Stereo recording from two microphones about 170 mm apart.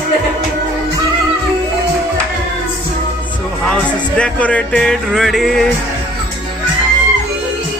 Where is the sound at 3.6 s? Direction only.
5° left (ahead or behind).